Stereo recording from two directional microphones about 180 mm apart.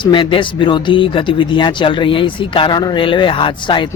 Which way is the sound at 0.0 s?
30° left (ahead or behind).